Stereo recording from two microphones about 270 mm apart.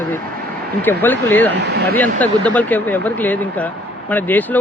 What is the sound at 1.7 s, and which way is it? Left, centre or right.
Speech, right.